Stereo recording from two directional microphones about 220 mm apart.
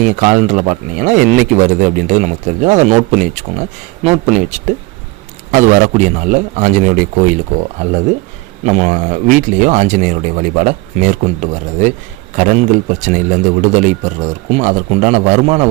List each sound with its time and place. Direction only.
0.0 s speech: 35° right (ahead or behind)
8.6 s speech: 35° right (ahead or behind)